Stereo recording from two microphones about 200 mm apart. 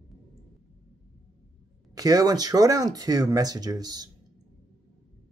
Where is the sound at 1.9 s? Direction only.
20° right (ahead or behind).